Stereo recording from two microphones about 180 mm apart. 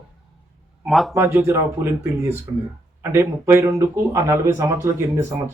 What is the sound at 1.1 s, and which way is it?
Speech, 10° right (ahead or behind).